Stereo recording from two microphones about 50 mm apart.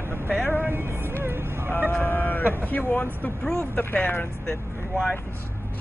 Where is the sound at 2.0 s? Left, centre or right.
Left.